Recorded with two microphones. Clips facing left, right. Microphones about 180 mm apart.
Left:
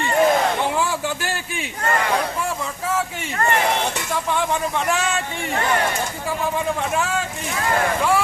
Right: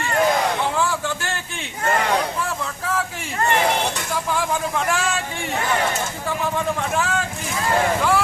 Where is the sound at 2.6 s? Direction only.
5° left (ahead or behind).